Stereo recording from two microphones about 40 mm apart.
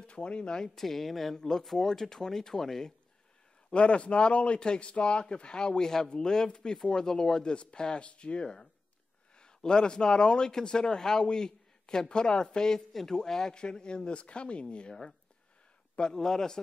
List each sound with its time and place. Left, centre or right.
0.0 s speech: left
0.7 s speech: centre
3.7 s speech: left
16.0 s speech: centre